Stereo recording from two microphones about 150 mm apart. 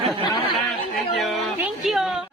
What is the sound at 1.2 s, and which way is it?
A man's voice, centre (ahead or behind).